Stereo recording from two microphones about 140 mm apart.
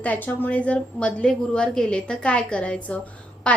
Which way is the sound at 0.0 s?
10° left (ahead or behind).